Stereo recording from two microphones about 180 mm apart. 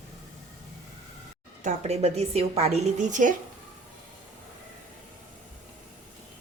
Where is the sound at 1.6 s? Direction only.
40° right (ahead or behind).